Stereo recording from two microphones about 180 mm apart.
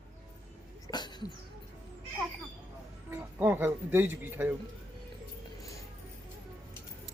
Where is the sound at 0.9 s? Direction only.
25° left (ahead or behind).